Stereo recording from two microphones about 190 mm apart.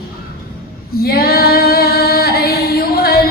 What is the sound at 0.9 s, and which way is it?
Female singing, 50° left (ahead or behind).